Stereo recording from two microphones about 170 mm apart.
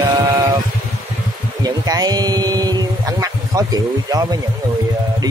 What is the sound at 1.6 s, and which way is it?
Speech, 20° right (ahead or behind).